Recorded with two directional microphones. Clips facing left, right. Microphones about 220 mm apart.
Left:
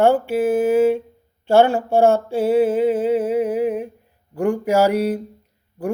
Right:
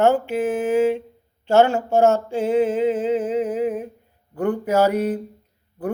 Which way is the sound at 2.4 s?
10° left (ahead or behind).